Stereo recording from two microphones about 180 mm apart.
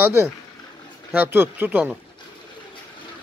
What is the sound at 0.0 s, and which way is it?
Speech, 10° right (ahead or behind).